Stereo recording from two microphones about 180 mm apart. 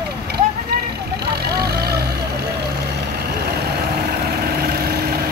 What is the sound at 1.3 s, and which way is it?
Vehicle, 60° right (ahead or behind).